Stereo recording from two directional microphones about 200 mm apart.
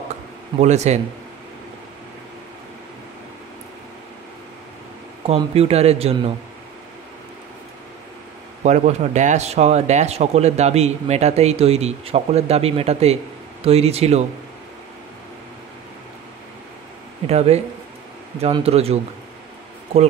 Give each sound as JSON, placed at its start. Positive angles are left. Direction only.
{"t": 0.6, "sound": "speech", "side_deg": -35}
{"t": 5.2, "sound": "speech", "side_deg": -30}
{"t": 8.6, "sound": "speech", "side_deg": -35}
{"t": 17.3, "sound": "speech", "side_deg": -30}